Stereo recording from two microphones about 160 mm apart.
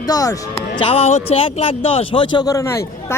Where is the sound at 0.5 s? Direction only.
35° left (ahead or behind).